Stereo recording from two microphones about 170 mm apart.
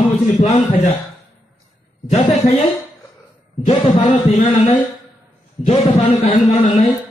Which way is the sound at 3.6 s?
35° left (ahead or behind).